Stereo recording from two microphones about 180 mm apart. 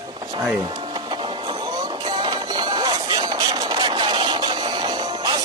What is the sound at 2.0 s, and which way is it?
Music, 25° right (ahead or behind).